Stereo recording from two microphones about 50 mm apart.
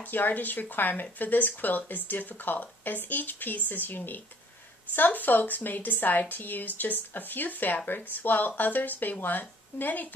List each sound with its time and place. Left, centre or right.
0.1 s speech: left